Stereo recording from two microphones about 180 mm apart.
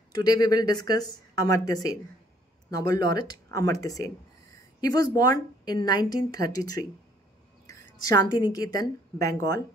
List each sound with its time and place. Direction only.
0.2 s a woman's voice: 20° left (ahead or behind)